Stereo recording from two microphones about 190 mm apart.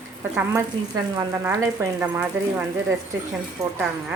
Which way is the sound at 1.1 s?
20° right (ahead or behind).